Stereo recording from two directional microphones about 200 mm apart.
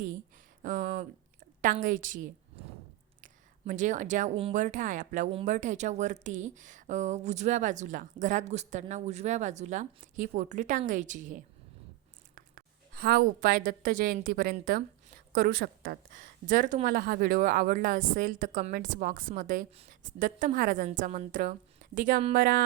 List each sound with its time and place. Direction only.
0.6 s speech: 40° right (ahead or behind)
3.7 s speech: 40° right (ahead or behind)
12.9 s a woman's voice: 50° right (ahead or behind)